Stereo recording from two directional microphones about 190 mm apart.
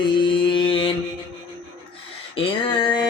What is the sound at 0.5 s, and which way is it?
Mantra, 30° left (ahead or behind).